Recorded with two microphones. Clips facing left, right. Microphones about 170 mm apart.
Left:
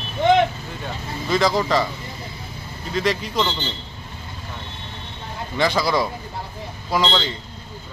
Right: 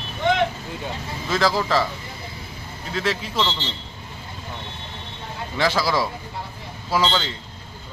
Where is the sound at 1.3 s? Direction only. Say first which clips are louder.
Left 2 dB; centre (ahead or behind).